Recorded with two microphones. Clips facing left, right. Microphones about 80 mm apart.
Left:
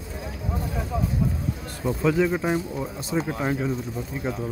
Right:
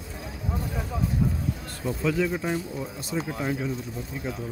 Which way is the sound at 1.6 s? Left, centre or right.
Left.